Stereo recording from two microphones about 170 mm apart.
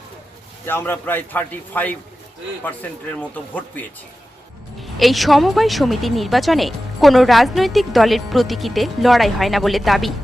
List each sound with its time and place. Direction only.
0.6 s a man's voice: 15° left (ahead or behind)
3.2 s a man's voice: 10° left (ahead or behind)